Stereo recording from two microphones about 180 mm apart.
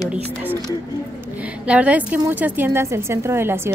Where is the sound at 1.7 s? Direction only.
10° right (ahead or behind).